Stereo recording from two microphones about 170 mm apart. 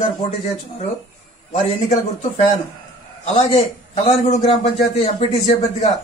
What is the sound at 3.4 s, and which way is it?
A man's voice, 35° left (ahead or behind).